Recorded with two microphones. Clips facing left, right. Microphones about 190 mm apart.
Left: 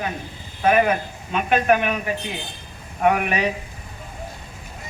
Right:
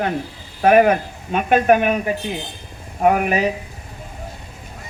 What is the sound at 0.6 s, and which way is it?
A man's voice, 50° right (ahead or behind).